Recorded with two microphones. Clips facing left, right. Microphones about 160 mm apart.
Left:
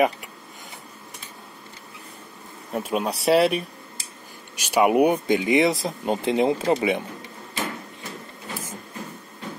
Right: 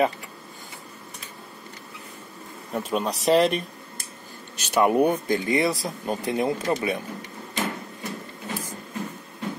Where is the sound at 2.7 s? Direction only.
5° left (ahead or behind); by 7.1 s 20° left (ahead or behind).